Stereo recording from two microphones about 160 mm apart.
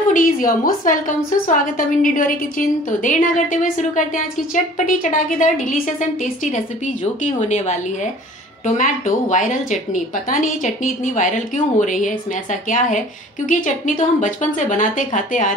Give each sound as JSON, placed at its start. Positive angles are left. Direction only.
{"t": 0.1, "sound": "a woman's voice", "side_deg": 60}